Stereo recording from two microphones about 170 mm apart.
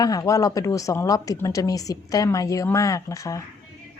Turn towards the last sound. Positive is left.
turn(degrees=20)  # may be behind; listen again after turning